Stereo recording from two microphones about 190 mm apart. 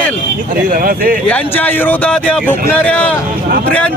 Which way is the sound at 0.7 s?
50° right (ahead or behind).